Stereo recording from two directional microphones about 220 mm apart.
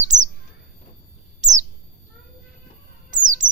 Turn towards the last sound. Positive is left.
turn(degrees=-35)  # may be behind; listen again after turning